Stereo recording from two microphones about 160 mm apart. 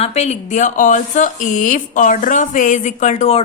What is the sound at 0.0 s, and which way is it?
A woman's voice, 45° left (ahead or behind).